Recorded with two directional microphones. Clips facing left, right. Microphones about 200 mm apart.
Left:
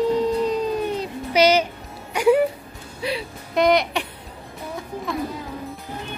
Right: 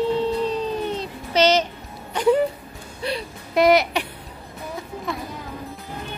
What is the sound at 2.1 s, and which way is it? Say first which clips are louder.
Music: left 1 dB; 10° left (ahead or behind).